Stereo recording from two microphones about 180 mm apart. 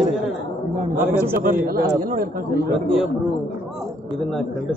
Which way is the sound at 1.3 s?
55° right (ahead or behind).